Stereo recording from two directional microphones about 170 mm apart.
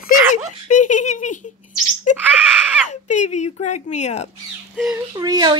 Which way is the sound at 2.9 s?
45° left (ahead or behind).